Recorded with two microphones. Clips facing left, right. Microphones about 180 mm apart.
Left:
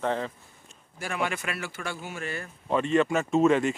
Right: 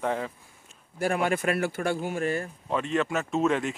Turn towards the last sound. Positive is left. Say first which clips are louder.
# left 4 dB
turn(degrees=0)  # may be behind; listen again after turning